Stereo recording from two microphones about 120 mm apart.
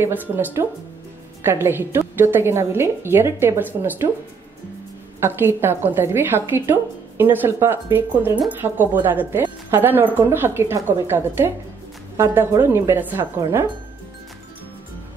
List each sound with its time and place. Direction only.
0.0 s a woman's voice: 15° right (ahead or behind)
5.2 s a woman's voice: 20° right (ahead or behind)